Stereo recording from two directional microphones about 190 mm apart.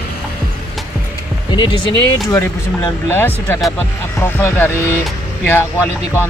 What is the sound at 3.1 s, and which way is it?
Speech, 10° left (ahead or behind).